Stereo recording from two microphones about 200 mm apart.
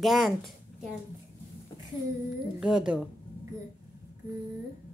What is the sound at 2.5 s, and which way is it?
Speech, centre (ahead or behind).